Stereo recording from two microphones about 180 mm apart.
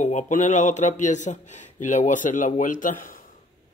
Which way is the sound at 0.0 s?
45° left (ahead or behind).